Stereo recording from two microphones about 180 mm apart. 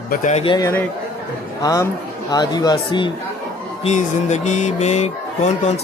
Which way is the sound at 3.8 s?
40° left (ahead or behind).